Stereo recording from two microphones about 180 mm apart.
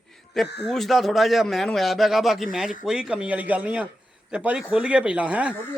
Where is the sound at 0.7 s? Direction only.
Centre (ahead or behind).